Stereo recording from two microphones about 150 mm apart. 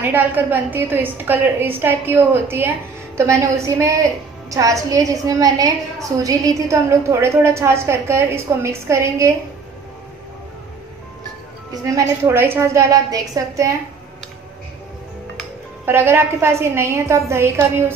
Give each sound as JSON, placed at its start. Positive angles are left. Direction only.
{"t": 0.0, "sound": "a woman's voice", "side_deg": -10}
{"t": 11.7, "sound": "a woman's voice", "side_deg": -20}
{"t": 15.8, "sound": "a woman's voice", "side_deg": -15}